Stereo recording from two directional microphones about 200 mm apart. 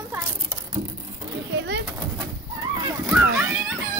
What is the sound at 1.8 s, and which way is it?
Pigeon, 10° right (ahead or behind).